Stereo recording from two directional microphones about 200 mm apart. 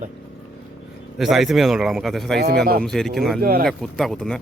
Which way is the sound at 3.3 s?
50° right (ahead or behind).